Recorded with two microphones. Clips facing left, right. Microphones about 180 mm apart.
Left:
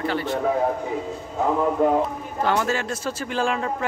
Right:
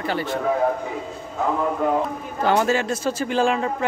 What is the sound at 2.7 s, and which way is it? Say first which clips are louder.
Speech: right 4 dB; centre (ahead or behind).